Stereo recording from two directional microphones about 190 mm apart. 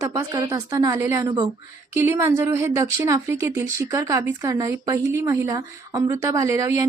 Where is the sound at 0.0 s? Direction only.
20° right (ahead or behind).